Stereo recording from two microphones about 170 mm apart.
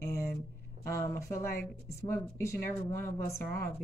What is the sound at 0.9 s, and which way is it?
Speech, 15° left (ahead or behind).